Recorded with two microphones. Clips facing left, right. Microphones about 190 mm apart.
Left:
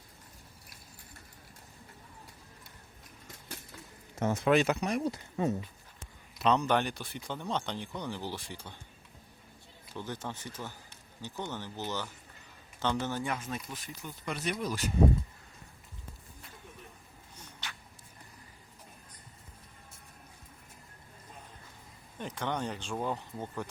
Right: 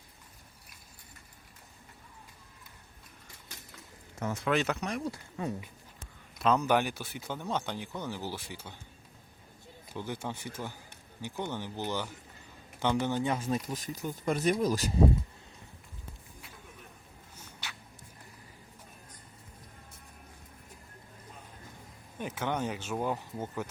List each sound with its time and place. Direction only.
4.2 s speech: 25° left (ahead or behind)
4.5 s speech: 10° left (ahead or behind)
6.4 s speech: 5° right (ahead or behind)
9.9 s speech: 10° right (ahead or behind)
13.3 s speech: 30° right (ahead or behind)
17.3 s a sound: 5° right (ahead or behind)
22.2 s speech: 5° right (ahead or behind)